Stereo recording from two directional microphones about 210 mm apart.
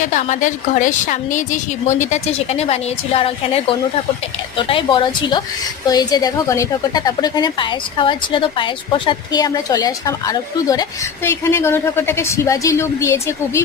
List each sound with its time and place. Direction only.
0.0 s a woman's voice: 35° left (ahead or behind); by 13.6 s 15° left (ahead or behind)